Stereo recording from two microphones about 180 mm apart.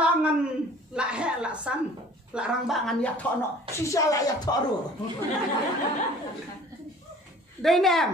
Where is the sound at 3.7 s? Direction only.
15° left (ahead or behind).